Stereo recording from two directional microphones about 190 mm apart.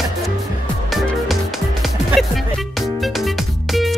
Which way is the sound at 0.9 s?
Centre (ahead or behind).